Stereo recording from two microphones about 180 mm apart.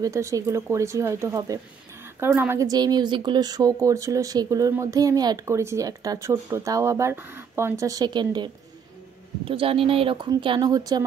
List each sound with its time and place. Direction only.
0.0 s speech: 15° right (ahead or behind)